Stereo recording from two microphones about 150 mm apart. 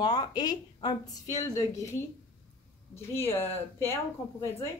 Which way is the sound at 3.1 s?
15° left (ahead or behind).